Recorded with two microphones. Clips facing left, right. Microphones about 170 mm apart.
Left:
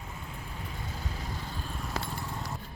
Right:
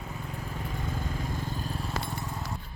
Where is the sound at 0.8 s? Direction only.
50° right (ahead or behind).